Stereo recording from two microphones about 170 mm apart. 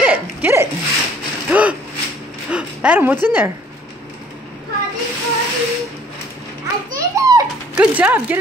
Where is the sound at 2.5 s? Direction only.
5° right (ahead or behind).